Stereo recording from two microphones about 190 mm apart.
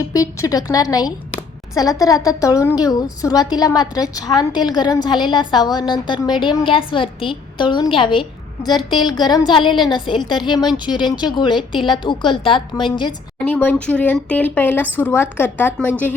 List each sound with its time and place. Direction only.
0.1 s speech: 20° left (ahead or behind)
13.4 s a woman's voice: 10° left (ahead or behind)